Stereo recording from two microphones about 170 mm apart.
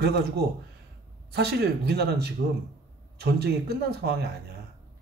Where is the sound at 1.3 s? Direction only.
70° right (ahead or behind).